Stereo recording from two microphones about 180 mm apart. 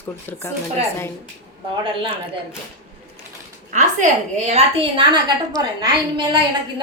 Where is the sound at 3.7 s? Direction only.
40° right (ahead or behind); by 6.4 s 25° right (ahead or behind).